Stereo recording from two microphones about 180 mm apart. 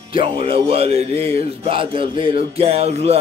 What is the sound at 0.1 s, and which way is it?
Music, 30° right (ahead or behind).